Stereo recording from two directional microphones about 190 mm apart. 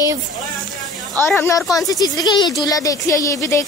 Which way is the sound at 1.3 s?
15° left (ahead or behind).